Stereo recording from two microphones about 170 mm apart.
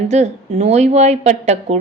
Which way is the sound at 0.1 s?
40° right (ahead or behind).